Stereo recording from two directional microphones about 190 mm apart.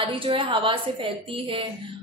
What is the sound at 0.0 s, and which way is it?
A woman's voice, 30° right (ahead or behind).